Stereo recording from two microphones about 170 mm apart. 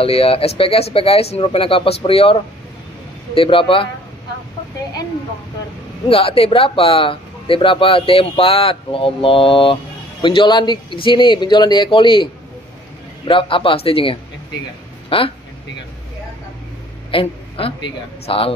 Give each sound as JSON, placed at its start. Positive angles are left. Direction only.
{"t": 0.0, "sound": "speech", "side_deg": 35}
{"t": 6.0, "sound": "speech", "side_deg": 35}
{"t": 13.3, "sound": "speech", "side_deg": 30}
{"t": 17.1, "sound": "speech", "side_deg": 35}